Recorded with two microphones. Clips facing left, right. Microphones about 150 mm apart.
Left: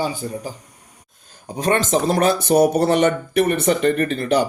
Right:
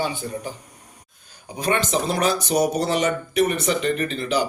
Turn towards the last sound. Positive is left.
turn(degrees=55)  # may be behind; listen again after turning